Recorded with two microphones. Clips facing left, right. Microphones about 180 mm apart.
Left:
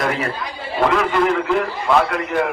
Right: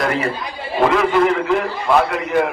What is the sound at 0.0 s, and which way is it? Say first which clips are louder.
A man's voice: right 2 dB; centre (ahead or behind).